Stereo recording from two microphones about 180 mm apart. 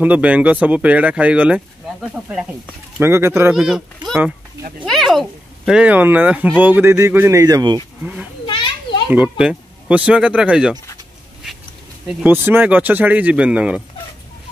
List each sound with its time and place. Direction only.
0.0 s speech: 10° right (ahead or behind)
3.5 s speech: 5° right (ahead or behind)
4.8 s a sound: centre (ahead or behind)
5.7 s speech: 5° right (ahead or behind); by 7.8 s 20° right (ahead or behind)
8.5 s children playing: 25° left (ahead or behind)
9.1 s speech: 5° right (ahead or behind)
12.1 s speech: 10° right (ahead or behind)